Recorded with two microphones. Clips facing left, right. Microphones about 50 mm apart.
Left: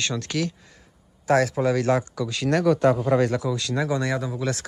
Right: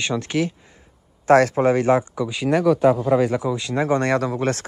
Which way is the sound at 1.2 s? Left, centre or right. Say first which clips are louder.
Right 5 dB; right.